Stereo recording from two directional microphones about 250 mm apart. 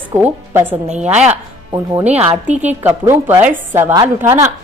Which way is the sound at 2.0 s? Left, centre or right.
Right.